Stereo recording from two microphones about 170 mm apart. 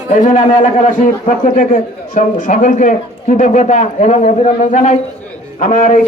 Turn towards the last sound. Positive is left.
turn(degrees=50)  # may be behind; listen again after turning